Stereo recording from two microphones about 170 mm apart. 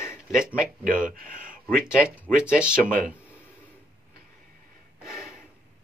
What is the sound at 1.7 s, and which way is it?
Speech, 5° right (ahead or behind).